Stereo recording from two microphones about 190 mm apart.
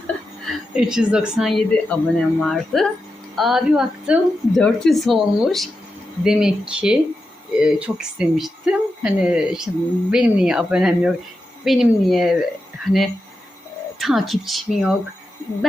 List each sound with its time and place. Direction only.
0.4 s speech: centre (ahead or behind)